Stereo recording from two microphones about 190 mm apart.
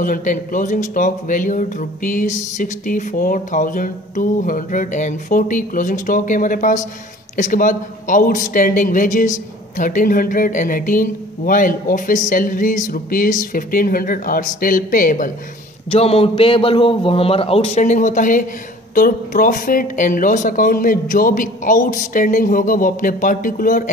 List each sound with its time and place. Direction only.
0.0 s speech: 45° left (ahead or behind)
15.9 s a man's voice: 30° left (ahead or behind)